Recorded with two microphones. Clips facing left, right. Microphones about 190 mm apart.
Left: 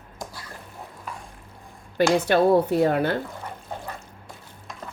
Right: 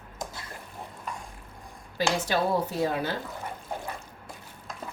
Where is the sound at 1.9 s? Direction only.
60° left (ahead or behind).